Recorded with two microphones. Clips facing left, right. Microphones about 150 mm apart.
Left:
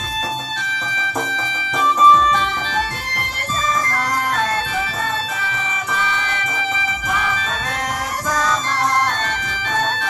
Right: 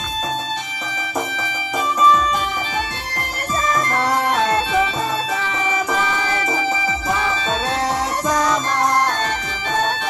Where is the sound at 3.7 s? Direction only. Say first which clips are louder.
Right 4 dB; 25° right (ahead or behind).